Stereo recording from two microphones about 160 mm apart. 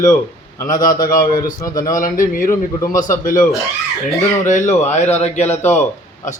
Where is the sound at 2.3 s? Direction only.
60° left (ahead or behind).